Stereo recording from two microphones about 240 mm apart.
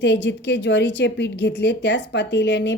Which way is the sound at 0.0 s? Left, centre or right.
Left.